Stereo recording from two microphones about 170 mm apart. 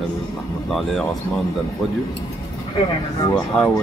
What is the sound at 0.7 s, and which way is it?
Speech, centre (ahead or behind).